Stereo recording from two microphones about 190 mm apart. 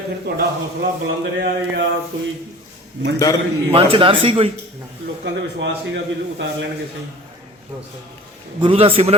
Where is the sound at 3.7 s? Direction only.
30° right (ahead or behind).